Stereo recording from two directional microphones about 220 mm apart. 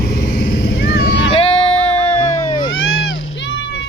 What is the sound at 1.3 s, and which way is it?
Music, 25° left (ahead or behind).